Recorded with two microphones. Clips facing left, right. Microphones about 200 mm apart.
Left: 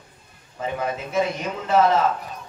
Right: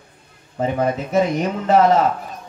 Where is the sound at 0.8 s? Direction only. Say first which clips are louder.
Right 4 dB; 40° right (ahead or behind).